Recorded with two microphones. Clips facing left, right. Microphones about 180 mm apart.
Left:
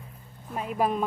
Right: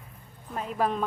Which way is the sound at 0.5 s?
10° left (ahead or behind).